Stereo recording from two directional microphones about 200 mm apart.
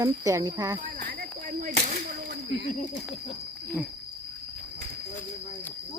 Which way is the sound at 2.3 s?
60° right (ahead or behind).